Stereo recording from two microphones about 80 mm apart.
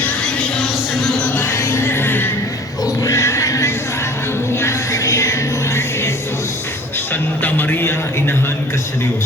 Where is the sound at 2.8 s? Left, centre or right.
Left.